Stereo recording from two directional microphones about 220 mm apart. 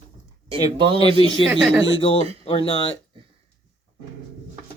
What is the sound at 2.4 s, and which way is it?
Speech, 25° left (ahead or behind).